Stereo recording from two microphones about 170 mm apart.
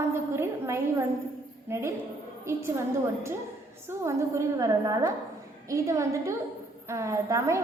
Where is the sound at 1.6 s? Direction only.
15° right (ahead or behind).